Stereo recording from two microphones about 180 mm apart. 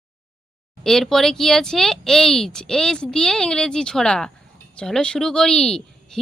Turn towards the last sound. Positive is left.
turn(degrees=5)  # may be behind; listen again after turning